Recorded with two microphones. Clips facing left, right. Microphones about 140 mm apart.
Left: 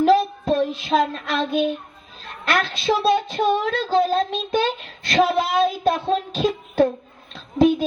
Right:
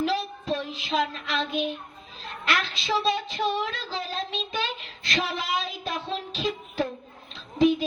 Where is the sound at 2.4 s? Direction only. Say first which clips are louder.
Left 6 dB; 45° left (ahead or behind).